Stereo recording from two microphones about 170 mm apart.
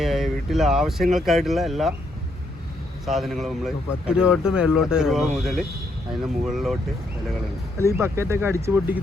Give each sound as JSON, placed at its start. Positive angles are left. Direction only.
{"t": 0.0, "sound": "speech", "side_deg": 0}
{"t": 3.1, "sound": "speech", "side_deg": 0}
{"t": 7.8, "sound": "speech", "side_deg": -15}